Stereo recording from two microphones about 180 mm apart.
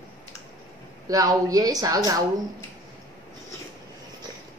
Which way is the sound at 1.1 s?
20° right (ahead or behind).